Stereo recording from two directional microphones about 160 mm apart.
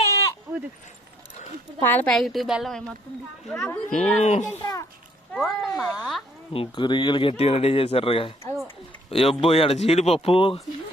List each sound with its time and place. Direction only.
0.5 s a sound: 15° right (ahead or behind)
1.8 s a woman's voice: 10° left (ahead or behind)
3.9 s speech: 45° left (ahead or behind)
4.6 s a child's voice: 25° left (ahead or behind)
5.3 s a woman's voice: 5° left (ahead or behind)
6.5 s speech: 35° left (ahead or behind)